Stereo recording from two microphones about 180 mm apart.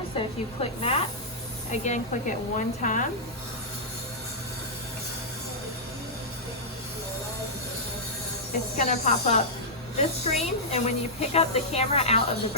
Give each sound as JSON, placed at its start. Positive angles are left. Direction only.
{"t": 0.2, "sound": "speech", "side_deg": 35}
{"t": 8.8, "sound": "speech", "side_deg": 40}